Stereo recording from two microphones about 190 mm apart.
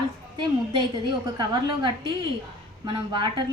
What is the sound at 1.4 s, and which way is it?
A woman's voice, 25° right (ahead or behind).